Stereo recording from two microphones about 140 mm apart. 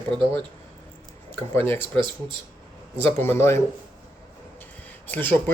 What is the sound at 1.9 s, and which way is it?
Speech, 35° right (ahead or behind).